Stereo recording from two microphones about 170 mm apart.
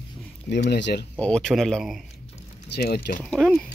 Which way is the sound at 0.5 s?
85° left.